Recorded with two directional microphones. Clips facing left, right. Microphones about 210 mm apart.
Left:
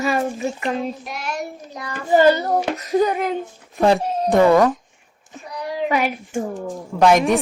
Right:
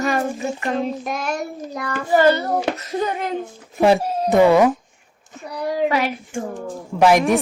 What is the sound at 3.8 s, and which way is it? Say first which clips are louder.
Speech: right 1 dB; 5° right (ahead or behind).